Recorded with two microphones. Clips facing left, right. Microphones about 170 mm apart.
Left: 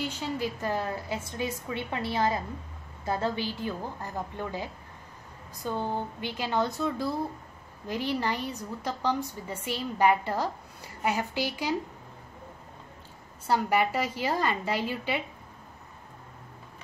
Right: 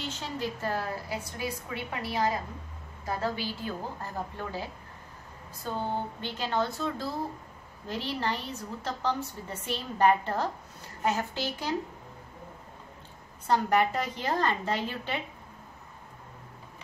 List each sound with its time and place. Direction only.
0.0 s a woman's voice: 10° left (ahead or behind)
6.2 s a woman's voice: 10° left (ahead or behind)
13.5 s a woman's voice: 10° left (ahead or behind)